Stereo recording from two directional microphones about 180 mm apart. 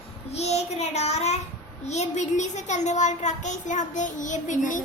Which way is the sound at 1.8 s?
40° left (ahead or behind).